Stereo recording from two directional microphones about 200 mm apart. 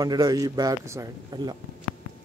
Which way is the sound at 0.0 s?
20° right (ahead or behind).